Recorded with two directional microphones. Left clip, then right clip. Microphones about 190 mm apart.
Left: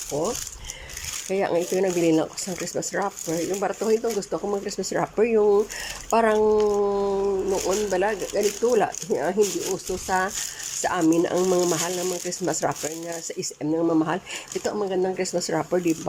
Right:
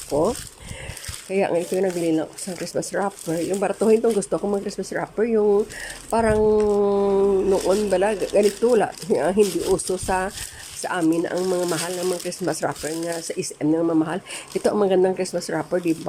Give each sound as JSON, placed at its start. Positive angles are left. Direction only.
{"t": 0.1, "sound": "speech", "side_deg": -15}
{"t": 14.6, "sound": "speech", "side_deg": -15}
{"t": 15.1, "sound": "speech", "side_deg": -5}